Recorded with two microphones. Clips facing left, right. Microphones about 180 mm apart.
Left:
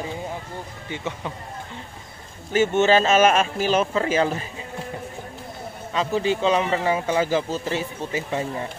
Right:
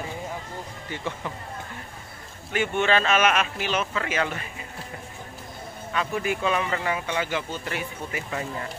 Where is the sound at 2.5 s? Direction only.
30° left (ahead or behind).